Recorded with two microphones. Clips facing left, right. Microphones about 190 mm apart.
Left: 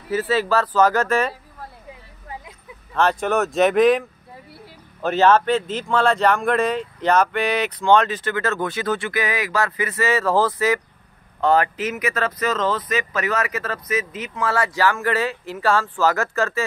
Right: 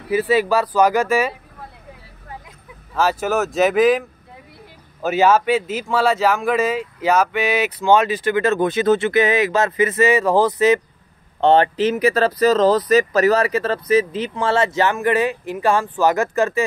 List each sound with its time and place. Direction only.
0.1 s speech: 15° right (ahead or behind)
2.9 s speech: 5° right (ahead or behind)
5.0 s speech: 10° right (ahead or behind)
11.4 s speech: 30° right (ahead or behind)